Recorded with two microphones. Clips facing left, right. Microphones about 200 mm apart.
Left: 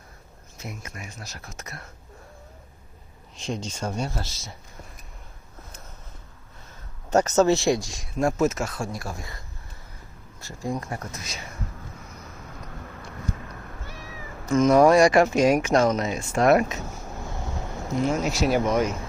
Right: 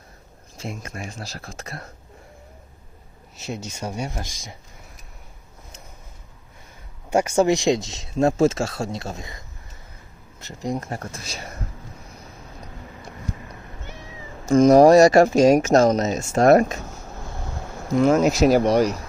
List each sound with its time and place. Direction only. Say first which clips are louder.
0.5 s speech: right 5 dB; 30° right (ahead or behind)
3.3 s speech: left 1 dB; 5° right (ahead or behind)
7.1 s speech: right 1 dB; 10° right (ahead or behind)
10.4 s speech: right 3 dB; 20° right (ahead or behind)
13.8 s speech: right 1 dB; 20° right (ahead or behind); by 16.7 s 45° right (ahead or behind)
18.2 s speech: right 6 dB; 45° right (ahead or behind)